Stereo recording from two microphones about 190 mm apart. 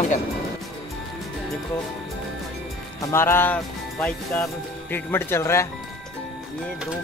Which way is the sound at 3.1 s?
15° left (ahead or behind).